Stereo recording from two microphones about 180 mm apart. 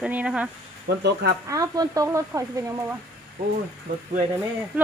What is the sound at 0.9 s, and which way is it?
Speech, 65° right (ahead or behind).